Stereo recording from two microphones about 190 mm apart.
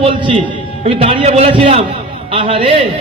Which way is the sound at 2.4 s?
30° right (ahead or behind).